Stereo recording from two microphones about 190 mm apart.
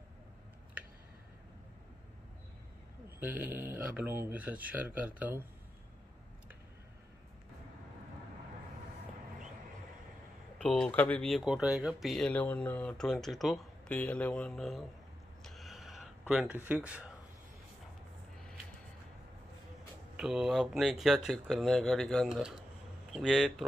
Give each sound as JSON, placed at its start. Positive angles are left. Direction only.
{"t": 3.2, "sound": "speech", "side_deg": -10}
{"t": 10.6, "sound": "speech", "side_deg": 5}
{"t": 15.4, "sound": "a sound", "side_deg": 0}
{"t": 20.2, "sound": "speech", "side_deg": -5}